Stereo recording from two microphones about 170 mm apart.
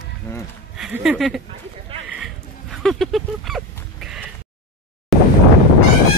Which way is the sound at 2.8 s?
Centre (ahead or behind).